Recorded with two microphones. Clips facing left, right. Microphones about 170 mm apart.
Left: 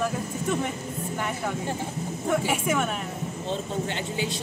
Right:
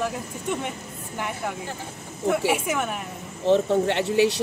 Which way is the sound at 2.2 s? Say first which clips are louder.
Right 3 dB; 5° right (ahead or behind).